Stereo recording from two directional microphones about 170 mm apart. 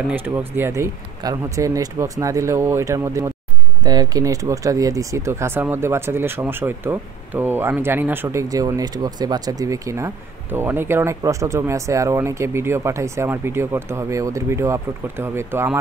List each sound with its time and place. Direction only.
0.1 s speech: 10° right (ahead or behind)